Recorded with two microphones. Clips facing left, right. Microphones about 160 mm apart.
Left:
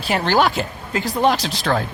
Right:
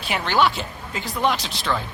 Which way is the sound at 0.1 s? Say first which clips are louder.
Left 3 dB; 40° left (ahead or behind).